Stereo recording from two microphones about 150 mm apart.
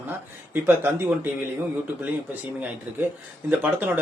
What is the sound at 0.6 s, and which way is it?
Speech, 15° right (ahead or behind).